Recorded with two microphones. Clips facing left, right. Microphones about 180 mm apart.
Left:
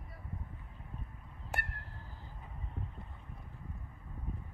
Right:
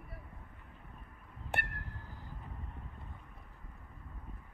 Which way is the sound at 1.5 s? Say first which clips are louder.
Right 2 dB; 65° right (ahead or behind).